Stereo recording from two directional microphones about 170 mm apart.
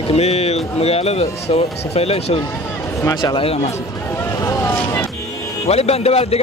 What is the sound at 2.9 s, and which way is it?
Speech, 20° left (ahead or behind).